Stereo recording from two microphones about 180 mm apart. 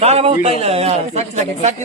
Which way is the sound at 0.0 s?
35° right (ahead or behind).